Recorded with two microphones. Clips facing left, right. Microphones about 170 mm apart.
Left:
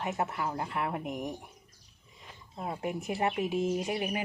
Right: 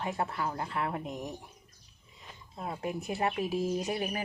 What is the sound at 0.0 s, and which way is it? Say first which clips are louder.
Speech: left 1 dB; 20° left (ahead or behind).